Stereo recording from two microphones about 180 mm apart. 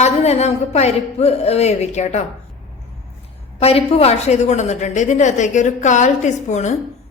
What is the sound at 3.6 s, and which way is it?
A woman's voice, 35° left (ahead or behind).